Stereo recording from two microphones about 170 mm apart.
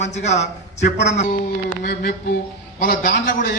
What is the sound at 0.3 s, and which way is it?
Speech, 40° left (ahead or behind).